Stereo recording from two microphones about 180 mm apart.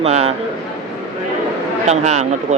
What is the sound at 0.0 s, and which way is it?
Speech, 35° right (ahead or behind).